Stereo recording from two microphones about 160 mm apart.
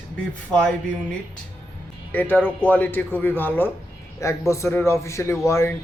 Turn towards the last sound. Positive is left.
turn(degrees=20)  # may be behind; listen again after turning